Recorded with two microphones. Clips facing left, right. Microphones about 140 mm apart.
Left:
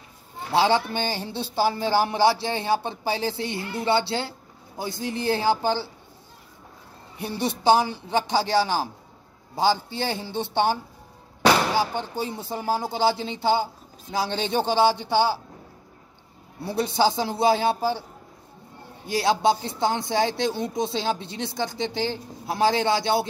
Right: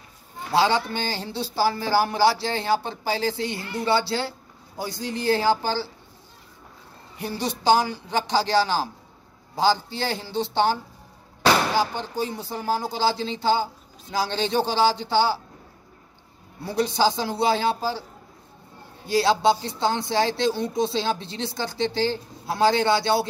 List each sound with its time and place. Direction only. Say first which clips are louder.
0.5 s speech: even; 25° left (ahead or behind)
7.6 s speech: even; 25° left (ahead or behind)
11.8 s speech: right 1 dB; 20° left (ahead or behind)
16.6 s speech: even; 20° left (ahead or behind)
19.0 s speech: right 2 dB; 20° left (ahead or behind)